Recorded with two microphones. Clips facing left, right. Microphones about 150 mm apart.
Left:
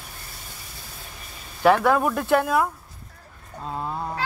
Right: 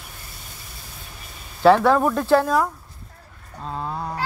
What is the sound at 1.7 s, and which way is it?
Speech, 10° left (ahead or behind).